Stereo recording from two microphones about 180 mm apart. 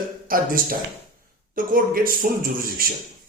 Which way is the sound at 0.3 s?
50° right (ahead or behind).